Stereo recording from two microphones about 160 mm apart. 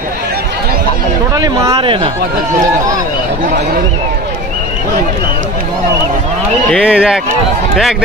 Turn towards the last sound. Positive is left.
turn(degrees=-5)  # may be behind; listen again after turning